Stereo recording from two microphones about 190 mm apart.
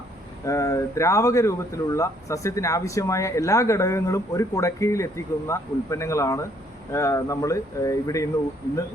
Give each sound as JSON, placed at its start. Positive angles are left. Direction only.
{"t": 0.4, "sound": "speech", "side_deg": 15}